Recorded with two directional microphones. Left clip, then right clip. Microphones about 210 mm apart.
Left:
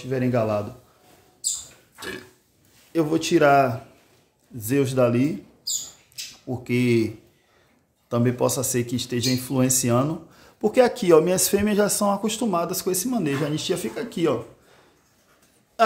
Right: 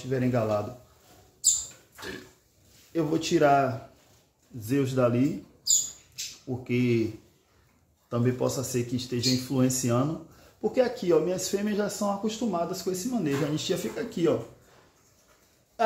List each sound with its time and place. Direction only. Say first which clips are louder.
0.1 s a man's voice: left 4 dB; 15° left (ahead or behind)
2.0 s a sound: left 5 dB; 25° left (ahead or behind)
2.9 s a man's voice: left 5 dB; 20° left (ahead or behind)
6.4 s speech: left 5 dB; 20° left (ahead or behind)
8.1 s speech: left 5 dB; 25° left (ahead or behind)
10.6 s speech: left 7 dB; 35° left (ahead or behind); by 14.3 s 20° left (ahead or behind)